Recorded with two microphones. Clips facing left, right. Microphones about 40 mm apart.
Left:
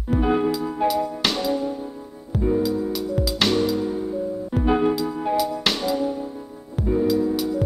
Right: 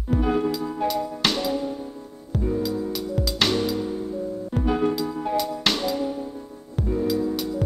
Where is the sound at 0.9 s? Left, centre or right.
Centre.